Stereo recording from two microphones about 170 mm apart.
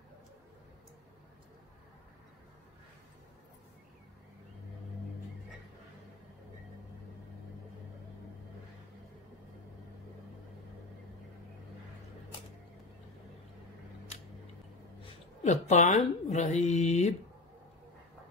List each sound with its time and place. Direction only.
15.4 s speech: 45° left (ahead or behind)